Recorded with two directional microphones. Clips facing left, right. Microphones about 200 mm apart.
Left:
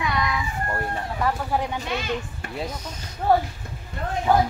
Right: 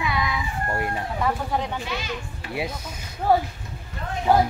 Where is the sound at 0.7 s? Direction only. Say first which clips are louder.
Right 3 dB; 15° right (ahead or behind).